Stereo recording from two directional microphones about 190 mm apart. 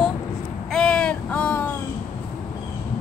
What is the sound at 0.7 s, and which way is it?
Speech, 5° left (ahead or behind).